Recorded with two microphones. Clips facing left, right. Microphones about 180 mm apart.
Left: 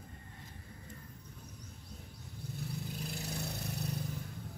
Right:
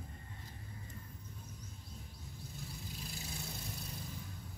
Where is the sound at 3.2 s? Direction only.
65° left (ahead or behind).